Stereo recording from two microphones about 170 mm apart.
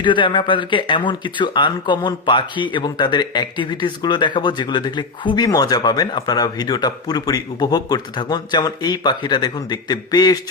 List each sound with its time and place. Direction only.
0.0 s speech: 30° left (ahead or behind)